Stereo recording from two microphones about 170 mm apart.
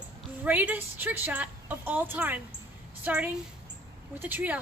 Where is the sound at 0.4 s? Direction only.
10° right (ahead or behind).